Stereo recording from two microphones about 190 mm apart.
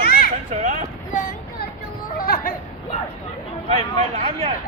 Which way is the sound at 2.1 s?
50° left (ahead or behind).